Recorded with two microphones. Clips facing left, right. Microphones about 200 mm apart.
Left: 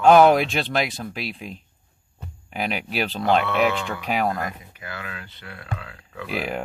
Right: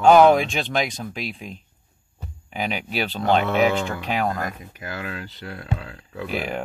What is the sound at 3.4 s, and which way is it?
Speech, 40° right (ahead or behind).